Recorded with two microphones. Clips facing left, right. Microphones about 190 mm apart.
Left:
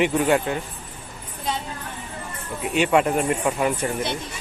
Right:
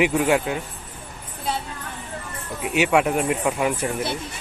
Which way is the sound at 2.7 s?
10° right (ahead or behind).